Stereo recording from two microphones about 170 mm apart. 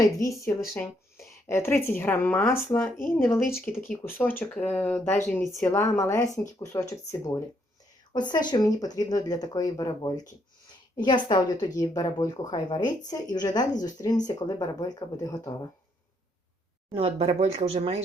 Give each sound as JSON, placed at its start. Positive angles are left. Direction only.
{"t": 0.0, "sound": "a woman's voice", "side_deg": 20}
{"t": 16.9, "sound": "speech", "side_deg": -35}